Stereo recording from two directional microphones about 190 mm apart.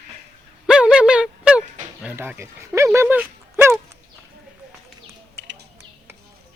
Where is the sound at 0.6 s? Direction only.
5° right (ahead or behind).